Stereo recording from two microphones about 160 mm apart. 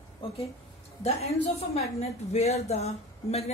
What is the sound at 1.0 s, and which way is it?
A woman's voice, 40° left (ahead or behind).